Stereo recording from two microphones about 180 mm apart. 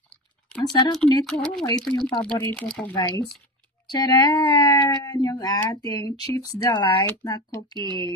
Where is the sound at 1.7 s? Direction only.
25° left (ahead or behind).